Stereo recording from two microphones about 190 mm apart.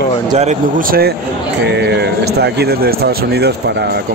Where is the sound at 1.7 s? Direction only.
60° right (ahead or behind).